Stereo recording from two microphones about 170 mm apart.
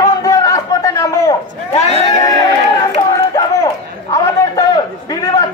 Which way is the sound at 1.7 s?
40° left (ahead or behind).